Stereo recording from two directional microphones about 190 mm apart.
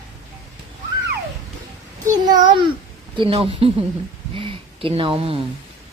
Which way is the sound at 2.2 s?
20° right (ahead or behind).